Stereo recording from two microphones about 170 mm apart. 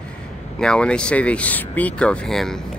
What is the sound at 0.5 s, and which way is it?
Speech, 5° left (ahead or behind).